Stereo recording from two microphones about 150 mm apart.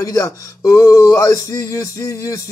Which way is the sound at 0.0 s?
25° left (ahead or behind).